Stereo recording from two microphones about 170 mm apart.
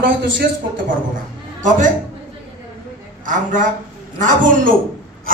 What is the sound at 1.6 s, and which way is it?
Speech, 50° right (ahead or behind).